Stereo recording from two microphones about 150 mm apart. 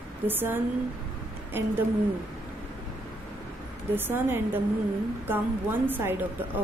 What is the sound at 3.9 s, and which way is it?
A woman's voice, 15° right (ahead or behind).